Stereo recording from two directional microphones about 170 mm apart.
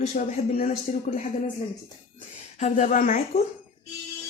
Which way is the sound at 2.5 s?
45° left (ahead or behind).